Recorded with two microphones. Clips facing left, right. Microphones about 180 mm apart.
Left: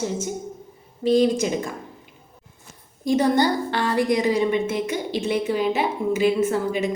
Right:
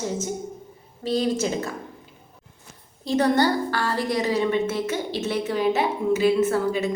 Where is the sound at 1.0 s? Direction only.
15° left (ahead or behind).